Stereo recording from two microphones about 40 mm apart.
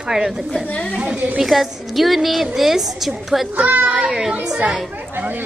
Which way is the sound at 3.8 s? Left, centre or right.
Centre.